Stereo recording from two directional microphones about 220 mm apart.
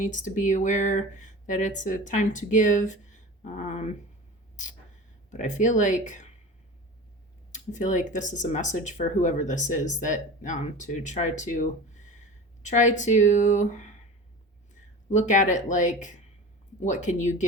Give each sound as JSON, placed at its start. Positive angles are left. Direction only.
{"t": 0.0, "sound": "speech", "side_deg": 35}
{"t": 5.3, "sound": "speech", "side_deg": 35}
{"t": 7.5, "sound": "speech", "side_deg": 35}
{"t": 15.1, "sound": "speech", "side_deg": 35}